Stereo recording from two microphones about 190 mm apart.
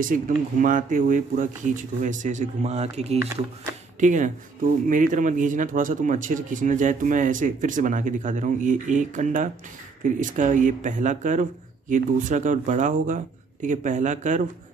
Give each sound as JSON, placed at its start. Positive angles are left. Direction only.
{"t": 0.0, "sound": "speech", "side_deg": -45}